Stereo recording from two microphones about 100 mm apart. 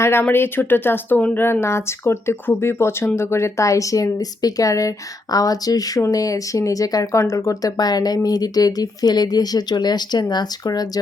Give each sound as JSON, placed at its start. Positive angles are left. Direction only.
{"t": 0.0, "sound": "speech", "side_deg": 25}